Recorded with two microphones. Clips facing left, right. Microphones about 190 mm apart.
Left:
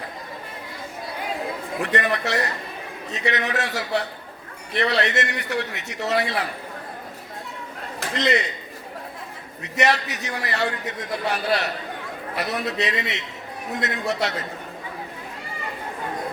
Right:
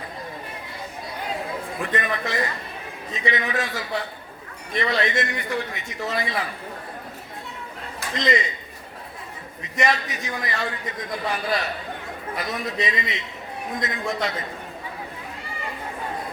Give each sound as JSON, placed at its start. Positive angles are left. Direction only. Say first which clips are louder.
{"t": 1.8, "sound": "a man's voice", "louder": "left 3 dB", "side_deg": 75}
{"t": 8.2, "sound": "a man's voice", "louder": "left 1 dB", "side_deg": 70}
{"t": 9.7, "sound": "a man's voice", "louder": "left 2 dB", "side_deg": 70}